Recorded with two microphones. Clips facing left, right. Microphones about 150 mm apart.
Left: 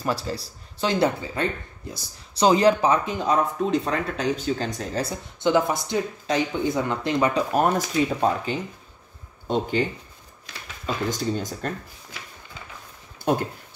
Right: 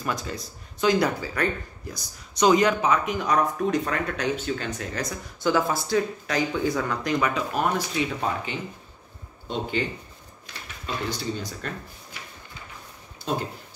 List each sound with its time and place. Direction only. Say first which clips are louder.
0.0 s speech: left 3 dB; 30° left (ahead or behind)
11.1 s speech: left 4 dB; 45° left (ahead or behind)